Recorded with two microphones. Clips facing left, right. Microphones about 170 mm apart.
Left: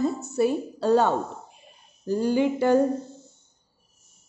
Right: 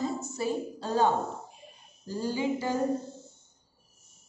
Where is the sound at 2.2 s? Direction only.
65° left (ahead or behind).